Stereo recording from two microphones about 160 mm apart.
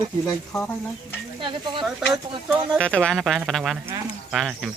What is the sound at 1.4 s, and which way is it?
Speech, 30° right (ahead or behind).